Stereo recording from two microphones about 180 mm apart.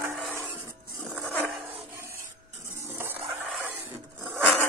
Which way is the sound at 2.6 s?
15° right (ahead or behind).